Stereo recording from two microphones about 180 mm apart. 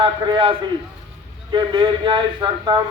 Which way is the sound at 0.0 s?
30° right (ahead or behind).